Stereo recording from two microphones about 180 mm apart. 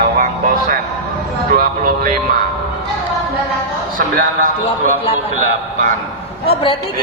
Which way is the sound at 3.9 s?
50° right (ahead or behind).